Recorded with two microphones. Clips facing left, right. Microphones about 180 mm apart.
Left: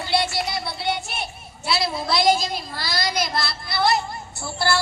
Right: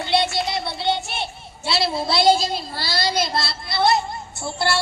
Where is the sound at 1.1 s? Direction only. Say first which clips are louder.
Right 2 dB; 25° right (ahead or behind).